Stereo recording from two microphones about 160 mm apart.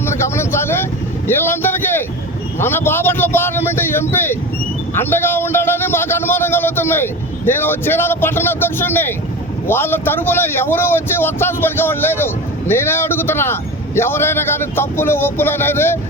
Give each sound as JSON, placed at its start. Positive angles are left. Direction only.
{"t": 0.0, "sound": "vehicle", "side_deg": 15}
{"t": 2.6, "sound": "speech", "side_deg": 15}